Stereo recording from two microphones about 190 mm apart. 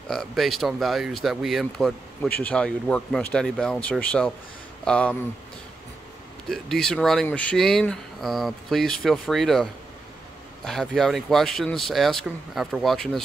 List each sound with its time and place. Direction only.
0.1 s speech: centre (ahead or behind)
6.5 s speech: centre (ahead or behind)